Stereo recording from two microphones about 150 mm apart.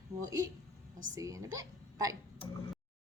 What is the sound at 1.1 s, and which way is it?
A woman's voice, 20° right (ahead or behind).